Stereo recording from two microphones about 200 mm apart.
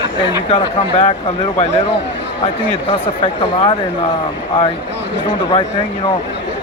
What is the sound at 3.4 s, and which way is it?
Speech, 25° left (ahead or behind).